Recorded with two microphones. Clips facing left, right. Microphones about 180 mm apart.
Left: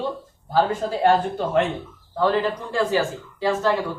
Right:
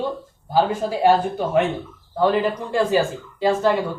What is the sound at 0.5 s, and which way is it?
Speech, 10° right (ahead or behind).